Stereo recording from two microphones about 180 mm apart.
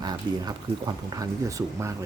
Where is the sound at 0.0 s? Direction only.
20° right (ahead or behind).